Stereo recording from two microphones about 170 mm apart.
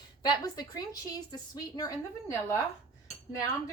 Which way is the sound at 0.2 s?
25° left (ahead or behind).